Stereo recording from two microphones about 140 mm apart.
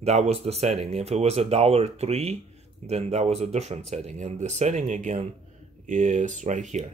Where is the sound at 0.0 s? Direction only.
50° right (ahead or behind).